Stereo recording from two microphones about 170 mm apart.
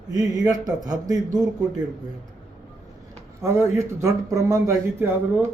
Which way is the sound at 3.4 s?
15° right (ahead or behind).